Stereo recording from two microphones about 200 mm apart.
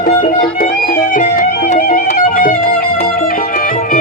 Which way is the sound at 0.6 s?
45° left (ahead or behind).